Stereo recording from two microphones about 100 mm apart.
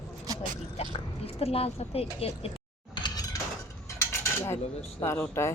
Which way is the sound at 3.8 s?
25° left (ahead or behind).